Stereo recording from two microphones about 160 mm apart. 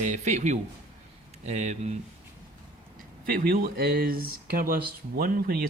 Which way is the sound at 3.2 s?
65° right (ahead or behind).